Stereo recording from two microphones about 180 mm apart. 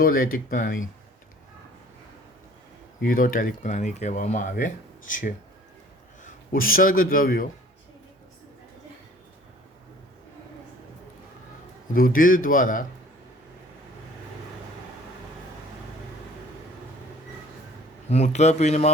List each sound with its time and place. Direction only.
0.0 s speech: 50° left (ahead or behind)
3.0 s a man's voice: 50° left (ahead or behind)
11.9 s speech: 50° left (ahead or behind)
18.1 s a man's voice: 40° left (ahead or behind)